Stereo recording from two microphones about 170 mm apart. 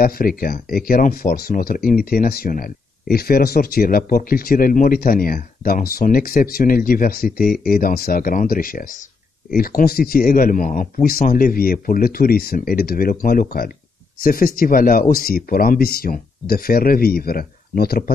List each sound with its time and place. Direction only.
0.0 s speech: 60° left (ahead or behind)